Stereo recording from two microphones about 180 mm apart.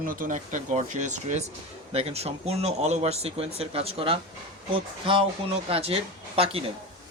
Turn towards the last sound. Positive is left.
turn(degrees=-35)  # may be behind; listen again after turning